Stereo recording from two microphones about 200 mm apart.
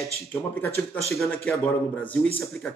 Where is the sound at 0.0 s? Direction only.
5° left (ahead or behind).